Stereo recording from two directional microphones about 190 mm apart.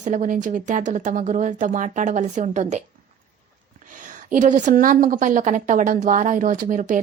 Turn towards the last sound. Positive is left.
turn(degrees=-40)  # may be behind; listen again after turning